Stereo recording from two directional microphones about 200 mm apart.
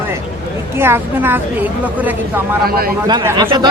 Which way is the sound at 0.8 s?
10° right (ahead or behind).